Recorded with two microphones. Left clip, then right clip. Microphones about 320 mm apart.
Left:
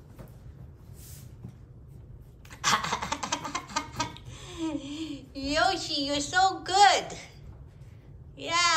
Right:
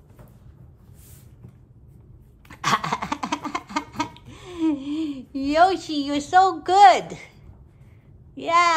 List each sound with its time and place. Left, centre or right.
2.4 s music: right
8.4 s a child's voice: centre